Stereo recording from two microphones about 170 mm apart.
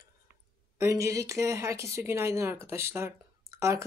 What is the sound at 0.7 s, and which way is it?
Speech, 15° right (ahead or behind).